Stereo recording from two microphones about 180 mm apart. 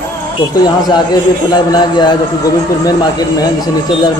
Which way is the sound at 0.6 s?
25° left (ahead or behind).